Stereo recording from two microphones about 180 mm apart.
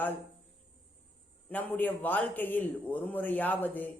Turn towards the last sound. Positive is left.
turn(degrees=10)  # may be behind; listen again after turning